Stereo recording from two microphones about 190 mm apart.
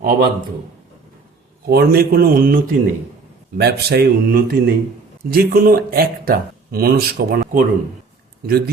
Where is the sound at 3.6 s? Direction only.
55° right (ahead or behind).